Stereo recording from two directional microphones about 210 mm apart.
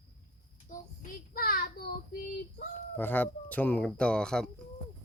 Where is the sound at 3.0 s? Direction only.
10° left (ahead or behind).